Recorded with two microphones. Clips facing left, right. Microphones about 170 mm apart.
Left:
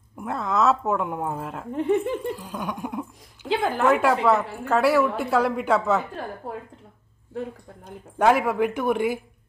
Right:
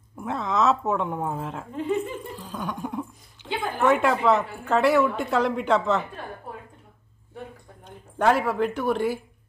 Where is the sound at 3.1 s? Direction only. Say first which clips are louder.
Left 6 dB; 90° left.